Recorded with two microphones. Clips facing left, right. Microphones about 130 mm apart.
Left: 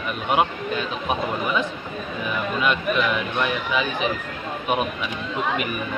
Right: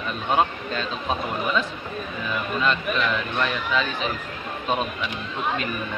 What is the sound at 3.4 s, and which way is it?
Speech, 15° left (ahead or behind).